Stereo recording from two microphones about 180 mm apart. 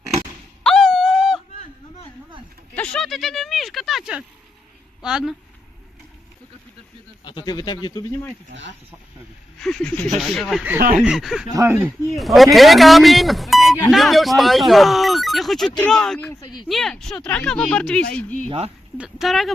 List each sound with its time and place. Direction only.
0.6 s wail: 5° left (ahead or behind)
2.7 s speech: 5° left (ahead or behind)
7.3 s speech: 25° left (ahead or behind)
8.4 s speech: 90° right
9.6 s speech: 5° left (ahead or behind)
10.8 s speech: 55° right (ahead or behind)
11.0 s speech: centre (ahead or behind)
11.5 s speech: 15° right (ahead or behind)
12.1 s speech: centre (ahead or behind)
16.4 s speech: 25° left (ahead or behind)
16.6 s speech: centre (ahead or behind)
18.4 s speech: 35° right (ahead or behind)
18.9 s speech: 5° right (ahead or behind)